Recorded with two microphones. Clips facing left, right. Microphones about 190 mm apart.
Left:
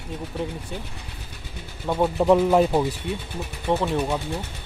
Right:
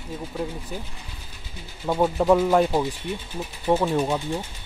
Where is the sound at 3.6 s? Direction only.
10° right (ahead or behind).